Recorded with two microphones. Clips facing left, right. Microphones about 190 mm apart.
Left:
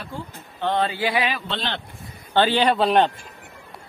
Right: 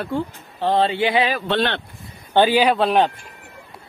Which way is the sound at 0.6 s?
30° right (ahead or behind).